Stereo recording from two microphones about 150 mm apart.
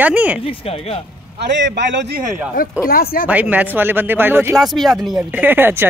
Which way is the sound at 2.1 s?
70° right (ahead or behind).